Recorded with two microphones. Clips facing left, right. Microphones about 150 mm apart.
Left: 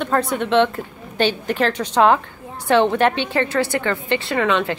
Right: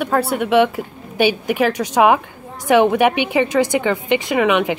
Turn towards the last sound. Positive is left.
turn(degrees=-15)  # may be behind; listen again after turning